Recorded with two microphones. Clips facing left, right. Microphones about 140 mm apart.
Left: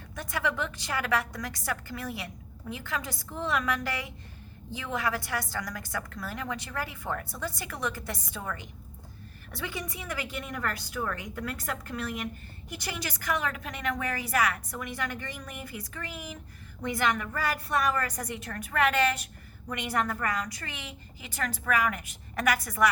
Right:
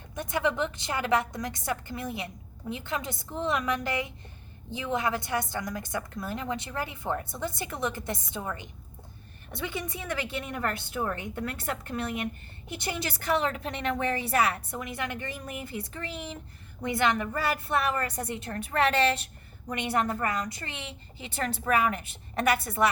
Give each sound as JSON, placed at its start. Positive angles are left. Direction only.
{"t": 0.2, "sound": "a woman's voice", "side_deg": -20}